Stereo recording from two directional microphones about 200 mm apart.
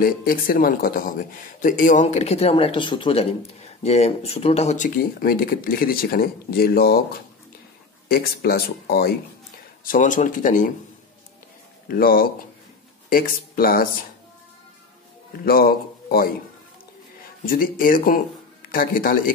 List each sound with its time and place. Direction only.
0.0 s speech: 45° left (ahead or behind)
11.9 s speech: 45° left (ahead or behind)
15.4 s speech: 50° left (ahead or behind)
17.5 s speech: 45° left (ahead or behind)